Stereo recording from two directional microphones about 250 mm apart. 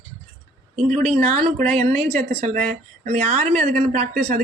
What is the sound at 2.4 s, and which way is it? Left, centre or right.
A woman's voice, right.